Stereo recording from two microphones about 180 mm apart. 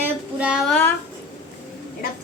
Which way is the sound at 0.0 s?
5° right (ahead or behind).